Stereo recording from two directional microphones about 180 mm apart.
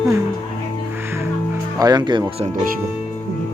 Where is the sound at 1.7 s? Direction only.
20° right (ahead or behind).